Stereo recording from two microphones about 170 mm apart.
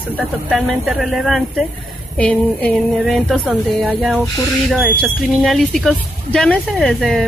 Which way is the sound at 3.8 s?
10° right (ahead or behind).